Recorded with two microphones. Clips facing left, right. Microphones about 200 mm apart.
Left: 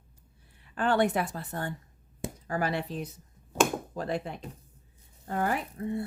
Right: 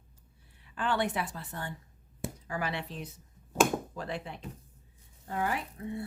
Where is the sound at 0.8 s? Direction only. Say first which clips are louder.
Left 5 dB; 45° left (ahead or behind).